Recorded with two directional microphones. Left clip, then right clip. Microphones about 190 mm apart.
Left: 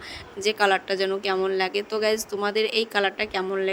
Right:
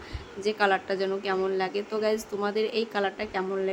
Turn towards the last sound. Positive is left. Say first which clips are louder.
# left 4 dB
turn(degrees=45)  # may be behind; listen again after turning